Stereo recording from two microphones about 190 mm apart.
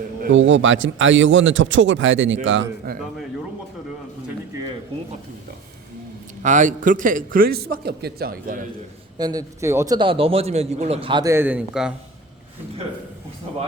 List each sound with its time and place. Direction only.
0.3 s a man's voice: 75° right (ahead or behind)
2.9 s a man's voice: 50° right (ahead or behind)
6.4 s a man's voice: 40° right (ahead or behind)
9.1 s a man's voice: 20° right (ahead or behind); by 11.9 s 5° right (ahead or behind)